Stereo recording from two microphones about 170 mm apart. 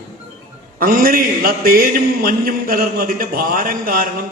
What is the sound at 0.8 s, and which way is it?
A man's voice, 55° right (ahead or behind).